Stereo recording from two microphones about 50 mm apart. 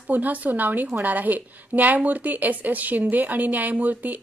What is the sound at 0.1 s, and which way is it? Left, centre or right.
A woman's voice, right.